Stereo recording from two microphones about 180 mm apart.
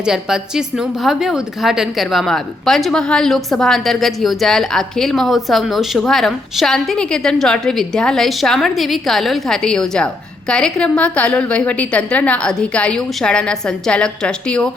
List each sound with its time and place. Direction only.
0.0 s a woman's voice: 5° right (ahead or behind)